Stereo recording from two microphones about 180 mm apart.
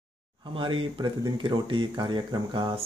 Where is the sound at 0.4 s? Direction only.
25° right (ahead or behind).